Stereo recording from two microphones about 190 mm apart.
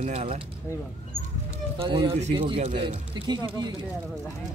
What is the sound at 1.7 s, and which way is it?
Speech, 25° right (ahead or behind).